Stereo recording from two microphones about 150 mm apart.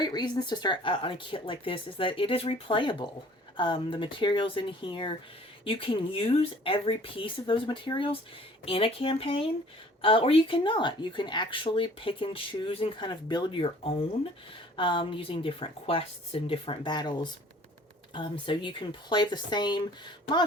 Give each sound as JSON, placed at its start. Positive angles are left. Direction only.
{"t": 0.0, "sound": "speech", "side_deg": 30}